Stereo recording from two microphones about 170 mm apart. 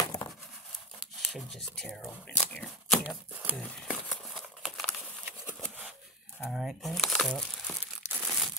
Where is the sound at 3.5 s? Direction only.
5° left (ahead or behind).